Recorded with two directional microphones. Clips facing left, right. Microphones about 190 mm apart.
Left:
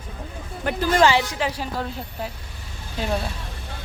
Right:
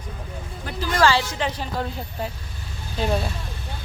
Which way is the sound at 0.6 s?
65° left (ahead or behind).